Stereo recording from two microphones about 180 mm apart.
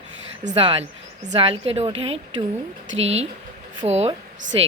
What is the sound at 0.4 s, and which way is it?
A woman's voice, 30° right (ahead or behind).